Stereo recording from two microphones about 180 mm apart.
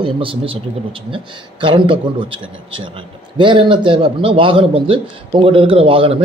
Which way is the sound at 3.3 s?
25° right (ahead or behind).